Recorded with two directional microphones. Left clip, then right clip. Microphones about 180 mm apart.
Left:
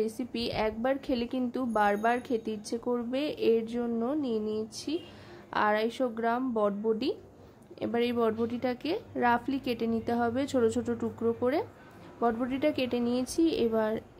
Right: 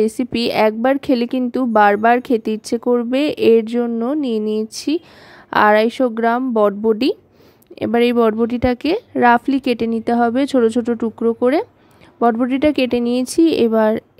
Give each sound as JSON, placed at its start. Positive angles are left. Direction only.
{"t": 0.0, "sound": "a woman's voice", "side_deg": -45}